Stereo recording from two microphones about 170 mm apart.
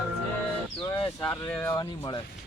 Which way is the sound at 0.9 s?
30° left (ahead or behind).